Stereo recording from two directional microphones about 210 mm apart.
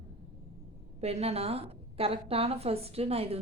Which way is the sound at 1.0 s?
30° right (ahead or behind).